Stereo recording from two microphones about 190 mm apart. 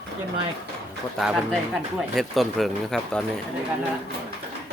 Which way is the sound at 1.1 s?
Centre (ahead or behind).